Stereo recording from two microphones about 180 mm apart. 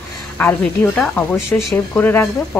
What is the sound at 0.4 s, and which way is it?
Speech, 5° left (ahead or behind).